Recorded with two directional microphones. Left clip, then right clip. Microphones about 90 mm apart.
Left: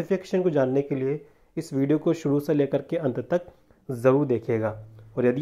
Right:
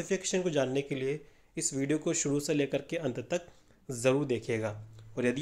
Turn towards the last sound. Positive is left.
turn(degrees=10)  # may be behind; listen again after turning